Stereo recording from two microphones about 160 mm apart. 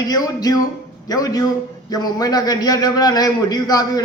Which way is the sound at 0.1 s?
25° left (ahead or behind).